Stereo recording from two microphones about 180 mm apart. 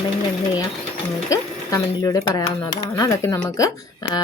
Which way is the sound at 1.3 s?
20° left (ahead or behind).